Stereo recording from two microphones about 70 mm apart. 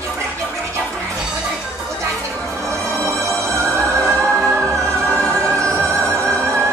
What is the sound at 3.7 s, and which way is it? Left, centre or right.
Music, right.